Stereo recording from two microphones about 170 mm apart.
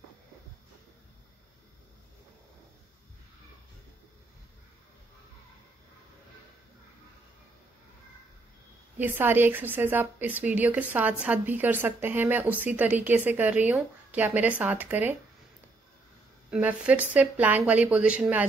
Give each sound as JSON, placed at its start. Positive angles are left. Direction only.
{"t": 8.9, "sound": "a woman's voice", "side_deg": -10}
{"t": 16.4, "sound": "a woman's voice", "side_deg": -5}